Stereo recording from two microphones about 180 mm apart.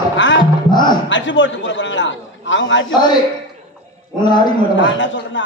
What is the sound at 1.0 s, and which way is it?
A man's voice, 90° left.